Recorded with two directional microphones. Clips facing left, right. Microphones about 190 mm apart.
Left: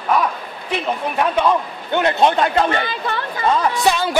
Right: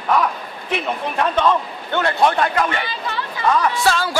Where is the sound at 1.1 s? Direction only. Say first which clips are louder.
Even; 10° left (ahead or behind); by 2.8 s 30° left (ahead or behind).